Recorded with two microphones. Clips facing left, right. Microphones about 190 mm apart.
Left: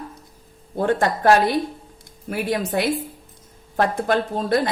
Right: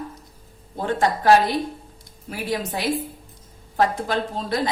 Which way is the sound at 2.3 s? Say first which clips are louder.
Left 4 dB; 55° left (ahead or behind).